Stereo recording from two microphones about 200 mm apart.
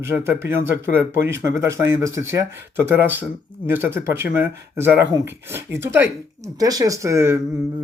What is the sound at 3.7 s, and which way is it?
Speech, 10° right (ahead or behind).